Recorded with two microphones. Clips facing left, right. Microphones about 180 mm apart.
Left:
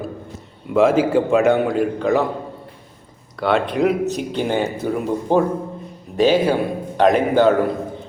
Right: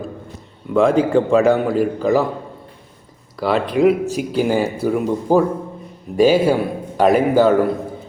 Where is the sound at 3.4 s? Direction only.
Centre (ahead or behind).